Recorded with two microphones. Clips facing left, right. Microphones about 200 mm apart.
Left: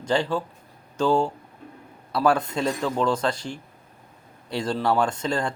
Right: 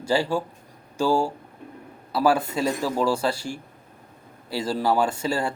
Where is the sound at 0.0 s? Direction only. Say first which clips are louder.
Right 1 dB; 10° right (ahead or behind).